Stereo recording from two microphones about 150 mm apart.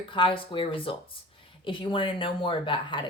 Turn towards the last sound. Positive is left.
turn(degrees=35)  # may be behind; listen again after turning